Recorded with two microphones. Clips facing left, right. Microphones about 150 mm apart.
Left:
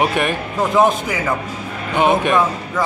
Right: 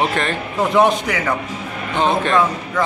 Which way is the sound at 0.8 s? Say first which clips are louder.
Even; 5° left (ahead or behind).